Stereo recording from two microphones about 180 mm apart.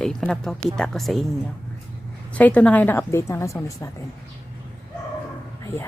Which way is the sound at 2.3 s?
10° left (ahead or behind).